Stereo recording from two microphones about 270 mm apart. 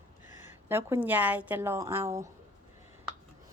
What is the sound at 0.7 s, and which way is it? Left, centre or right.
Speech, centre.